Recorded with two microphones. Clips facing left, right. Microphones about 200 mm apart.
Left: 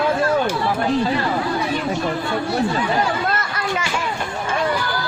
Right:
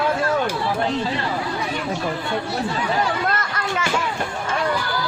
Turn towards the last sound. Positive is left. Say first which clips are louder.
# left 1 dB
turn(degrees=10)  # may be behind; listen again after turning